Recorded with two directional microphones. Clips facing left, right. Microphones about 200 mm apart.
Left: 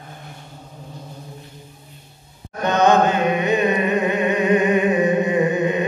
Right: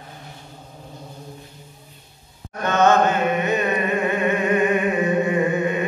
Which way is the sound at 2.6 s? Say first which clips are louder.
Left 1 dB; 15° left (ahead or behind).